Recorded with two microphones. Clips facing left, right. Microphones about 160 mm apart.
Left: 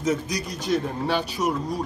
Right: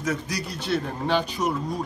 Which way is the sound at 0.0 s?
20° left (ahead or behind).